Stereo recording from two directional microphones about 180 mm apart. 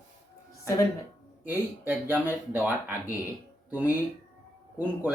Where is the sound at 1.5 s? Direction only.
10° right (ahead or behind).